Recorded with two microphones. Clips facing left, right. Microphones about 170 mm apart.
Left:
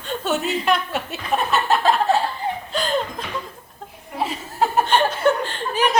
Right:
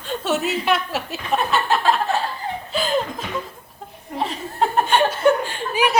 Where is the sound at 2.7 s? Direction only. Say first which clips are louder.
Right 2 dB; 5° right (ahead or behind).